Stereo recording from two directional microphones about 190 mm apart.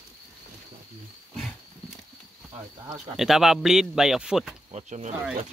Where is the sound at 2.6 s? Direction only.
20° right (ahead or behind).